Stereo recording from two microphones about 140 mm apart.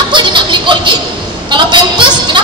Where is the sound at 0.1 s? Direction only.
35° right (ahead or behind).